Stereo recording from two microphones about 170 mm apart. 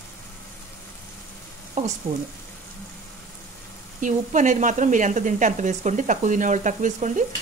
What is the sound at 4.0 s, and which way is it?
Speech, 50° right (ahead or behind).